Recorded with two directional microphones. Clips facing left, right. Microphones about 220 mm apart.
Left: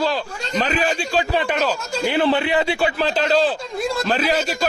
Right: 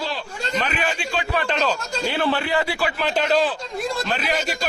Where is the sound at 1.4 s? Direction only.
10° left (ahead or behind).